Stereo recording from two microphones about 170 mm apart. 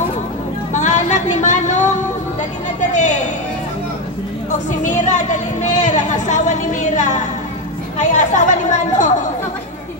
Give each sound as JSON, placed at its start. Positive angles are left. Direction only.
{"t": 0.7, "sound": "music", "side_deg": 45}
{"t": 4.8, "sound": "a woman's voice", "side_deg": 45}